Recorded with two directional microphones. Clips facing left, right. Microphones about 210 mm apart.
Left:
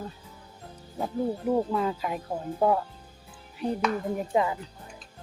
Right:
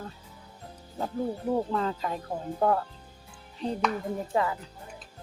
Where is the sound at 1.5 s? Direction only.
10° left (ahead or behind).